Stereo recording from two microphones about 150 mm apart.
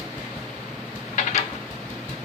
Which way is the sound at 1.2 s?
55° left (ahead or behind).